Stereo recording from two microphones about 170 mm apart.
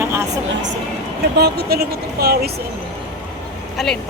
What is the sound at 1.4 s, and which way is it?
Speech, 75° right (ahead or behind).